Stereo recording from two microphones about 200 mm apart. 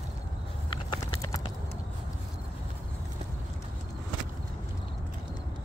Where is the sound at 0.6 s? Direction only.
20° left (ahead or behind).